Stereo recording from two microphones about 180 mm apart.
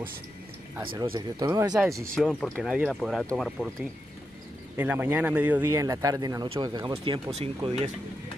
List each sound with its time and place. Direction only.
1.1 s speech: 20° right (ahead or behind)
2.1 s speech: 5° left (ahead or behind)
4.7 s speech: 10° right (ahead or behind); by 7.9 s 35° right (ahead or behind)